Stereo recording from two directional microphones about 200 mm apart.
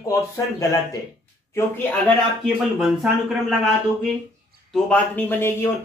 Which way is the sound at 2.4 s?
Centre (ahead or behind).